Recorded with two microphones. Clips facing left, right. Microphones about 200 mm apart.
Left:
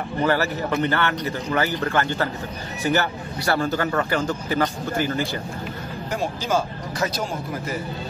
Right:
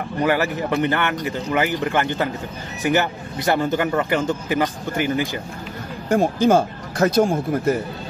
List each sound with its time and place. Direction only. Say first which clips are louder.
0.2 s speech: right 2 dB; 15° right (ahead or behind)
6.0 s speech: right 10 dB; 50° right (ahead or behind)